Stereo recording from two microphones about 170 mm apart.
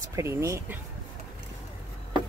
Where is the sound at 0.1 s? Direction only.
15° right (ahead or behind).